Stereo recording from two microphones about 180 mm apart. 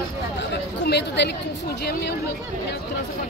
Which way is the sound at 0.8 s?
70° left (ahead or behind).